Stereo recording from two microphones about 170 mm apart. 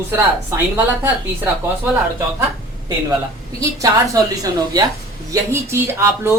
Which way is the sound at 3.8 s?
20° right (ahead or behind).